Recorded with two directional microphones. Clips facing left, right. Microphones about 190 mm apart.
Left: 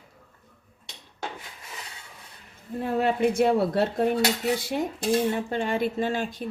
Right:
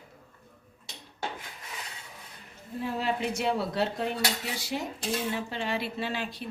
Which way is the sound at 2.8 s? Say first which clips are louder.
Left 7 dB; 55° left (ahead or behind).